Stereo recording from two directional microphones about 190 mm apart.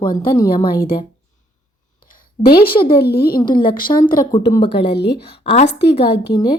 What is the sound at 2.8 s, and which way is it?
Speech, 55° left (ahead or behind).